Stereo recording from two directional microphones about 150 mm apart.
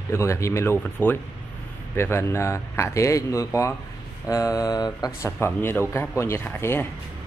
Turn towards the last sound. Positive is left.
turn(degrees=15)  # may be behind; listen again after turning